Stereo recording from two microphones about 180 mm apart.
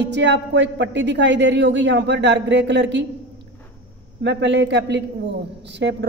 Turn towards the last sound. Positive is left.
turn(degrees=-80)